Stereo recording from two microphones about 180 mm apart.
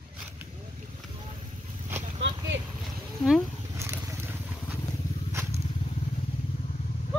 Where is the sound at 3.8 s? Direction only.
15° right (ahead or behind).